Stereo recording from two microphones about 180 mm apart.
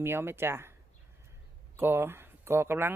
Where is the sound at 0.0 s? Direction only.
15° right (ahead or behind).